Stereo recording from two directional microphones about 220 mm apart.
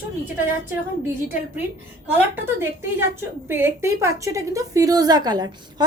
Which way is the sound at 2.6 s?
10° right (ahead or behind).